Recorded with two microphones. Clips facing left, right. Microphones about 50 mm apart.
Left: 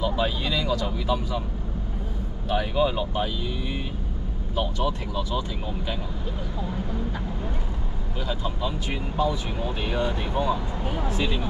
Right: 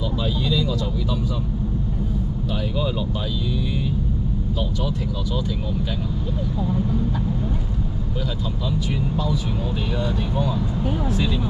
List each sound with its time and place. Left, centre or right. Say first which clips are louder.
0.0 s speech: even; left
2.5 s speech: left 4 dB; left
4.6 s speech: left 4 dB; left
8.6 s speech: right 7 dB; left